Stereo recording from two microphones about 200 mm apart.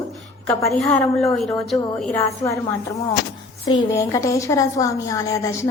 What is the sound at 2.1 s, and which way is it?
Speech, 15° left (ahead or behind).